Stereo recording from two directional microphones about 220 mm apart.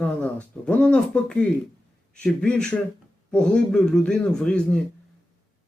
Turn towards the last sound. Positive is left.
turn(degrees=5)  # may be behind; listen again after turning